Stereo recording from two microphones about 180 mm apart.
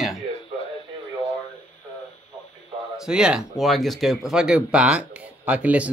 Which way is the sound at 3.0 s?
5° right (ahead or behind).